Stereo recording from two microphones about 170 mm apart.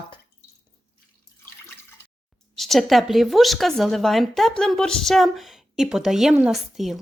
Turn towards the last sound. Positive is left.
turn(degrees=0)  # may be behind; listen again after turning